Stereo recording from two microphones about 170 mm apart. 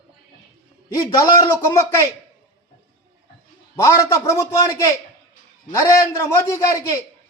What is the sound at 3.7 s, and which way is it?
Speech, 20° left (ahead or behind).